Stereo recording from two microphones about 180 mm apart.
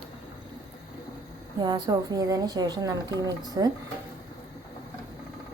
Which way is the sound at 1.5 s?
25° right (ahead or behind).